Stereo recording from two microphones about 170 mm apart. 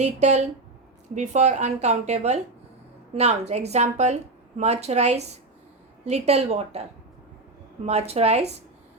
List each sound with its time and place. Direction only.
0.0 s a woman's voice: 40° right (ahead or behind)
7.9 s a woman's voice: 35° right (ahead or behind)